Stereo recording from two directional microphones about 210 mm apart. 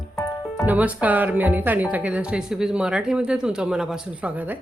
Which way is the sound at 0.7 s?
5° right (ahead or behind).